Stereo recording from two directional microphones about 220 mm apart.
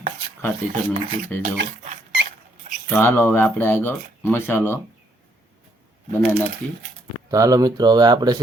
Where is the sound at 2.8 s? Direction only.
10° left (ahead or behind).